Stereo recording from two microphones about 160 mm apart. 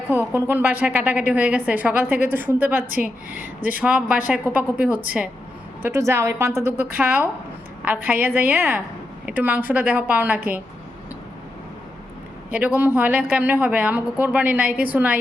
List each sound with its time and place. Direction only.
0.1 s a woman's voice: 10° right (ahead or behind)
12.5 s a woman's voice: 10° right (ahead or behind)